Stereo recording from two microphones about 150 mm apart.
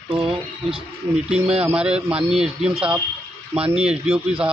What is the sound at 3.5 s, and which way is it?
Speech, 40° right (ahead or behind).